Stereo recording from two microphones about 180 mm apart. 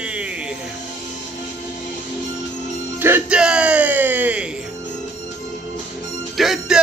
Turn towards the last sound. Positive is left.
turn(degrees=-5)  # may be behind; listen again after turning